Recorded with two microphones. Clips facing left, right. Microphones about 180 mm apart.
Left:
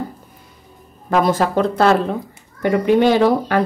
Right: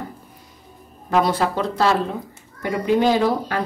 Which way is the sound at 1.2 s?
45° left (ahead or behind).